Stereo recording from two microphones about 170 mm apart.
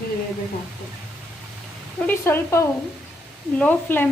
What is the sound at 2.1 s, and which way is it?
A woman's voice, 15° left (ahead or behind).